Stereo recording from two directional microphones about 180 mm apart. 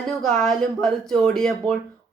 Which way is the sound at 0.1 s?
5° left (ahead or behind).